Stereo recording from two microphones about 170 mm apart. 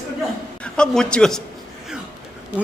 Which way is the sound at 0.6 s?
5° left (ahead or behind).